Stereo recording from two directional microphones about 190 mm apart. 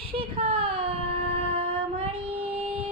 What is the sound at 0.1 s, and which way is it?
Female singing, 30° right (ahead or behind).